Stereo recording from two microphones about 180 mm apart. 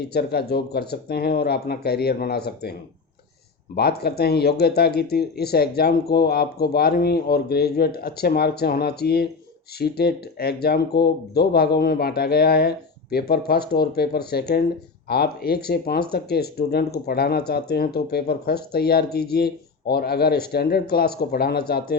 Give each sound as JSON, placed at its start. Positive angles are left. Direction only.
{"t": 0.0, "sound": "speech", "side_deg": 60}
{"t": 3.8, "sound": "speech", "side_deg": 60}